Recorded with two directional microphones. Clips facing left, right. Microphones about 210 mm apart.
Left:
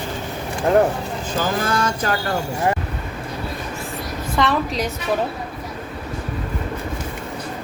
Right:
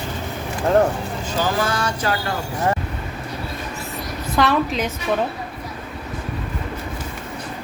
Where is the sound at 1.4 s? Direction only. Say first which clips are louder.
Even; 50° left (ahead or behind).